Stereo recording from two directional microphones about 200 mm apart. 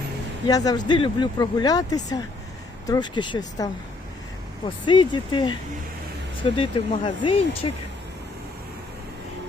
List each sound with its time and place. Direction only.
0.4 s speech: 20° left (ahead or behind)
6.6 s speech: 25° left (ahead or behind)